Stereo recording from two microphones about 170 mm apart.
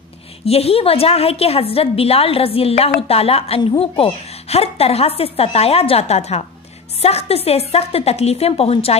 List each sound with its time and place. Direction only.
0.5 s a woman's voice: 35° left (ahead or behind)